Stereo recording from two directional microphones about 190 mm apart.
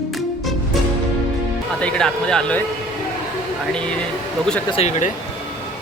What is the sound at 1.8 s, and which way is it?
Speech, 5° left (ahead or behind).